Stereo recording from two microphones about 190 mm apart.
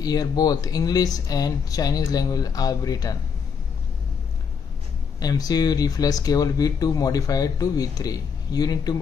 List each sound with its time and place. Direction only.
0.0 s speech: 20° left (ahead or behind)
5.2 s speech: 20° left (ahead or behind)